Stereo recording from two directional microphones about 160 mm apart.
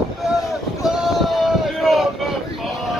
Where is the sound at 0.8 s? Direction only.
Centre (ahead or behind).